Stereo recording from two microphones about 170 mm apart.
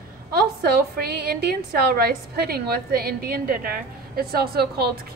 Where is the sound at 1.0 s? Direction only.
70° right (ahead or behind).